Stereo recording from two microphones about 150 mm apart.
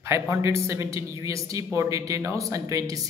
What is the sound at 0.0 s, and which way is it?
Speech, 20° right (ahead or behind).